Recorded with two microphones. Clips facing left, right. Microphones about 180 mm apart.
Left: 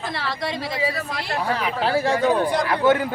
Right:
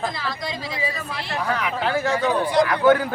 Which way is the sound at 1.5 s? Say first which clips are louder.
Left 1 dB; 30° left (ahead or behind).